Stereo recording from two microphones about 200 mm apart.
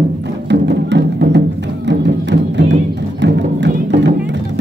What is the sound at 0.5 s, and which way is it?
Music, 60° right (ahead or behind).